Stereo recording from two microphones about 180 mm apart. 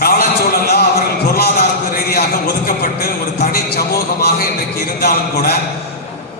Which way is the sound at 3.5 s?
60° left (ahead or behind).